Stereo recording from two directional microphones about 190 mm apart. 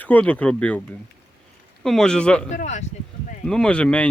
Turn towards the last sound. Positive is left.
turn(degrees=5)  # may be behind; listen again after turning